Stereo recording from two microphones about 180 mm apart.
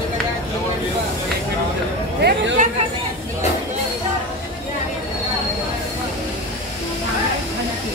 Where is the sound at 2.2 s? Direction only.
70° right (ahead or behind).